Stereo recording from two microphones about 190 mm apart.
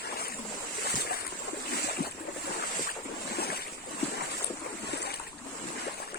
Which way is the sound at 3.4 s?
55° left (ahead or behind).